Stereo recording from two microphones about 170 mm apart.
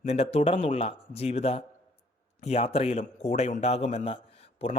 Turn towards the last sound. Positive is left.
turn(degrees=35)  # may be behind; listen again after turning